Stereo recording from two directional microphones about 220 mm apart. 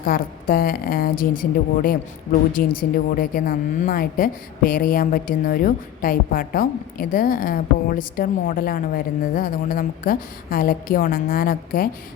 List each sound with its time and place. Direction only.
0.0 s speech: 40° left (ahead or behind)